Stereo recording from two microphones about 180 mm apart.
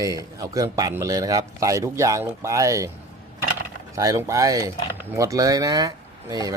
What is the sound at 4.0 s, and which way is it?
Speech, 20° right (ahead or behind).